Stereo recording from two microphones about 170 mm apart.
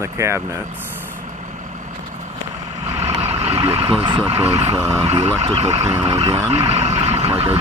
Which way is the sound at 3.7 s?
30° right (ahead or behind).